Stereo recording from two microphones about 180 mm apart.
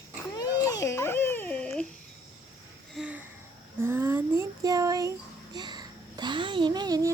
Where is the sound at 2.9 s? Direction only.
5° right (ahead or behind).